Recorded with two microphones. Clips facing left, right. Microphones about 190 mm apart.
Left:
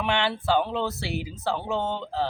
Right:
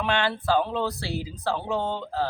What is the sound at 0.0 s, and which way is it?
A woman's voice, 25° left (ahead or behind).